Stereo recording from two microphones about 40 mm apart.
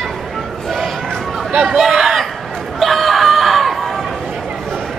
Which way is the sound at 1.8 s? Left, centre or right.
Centre.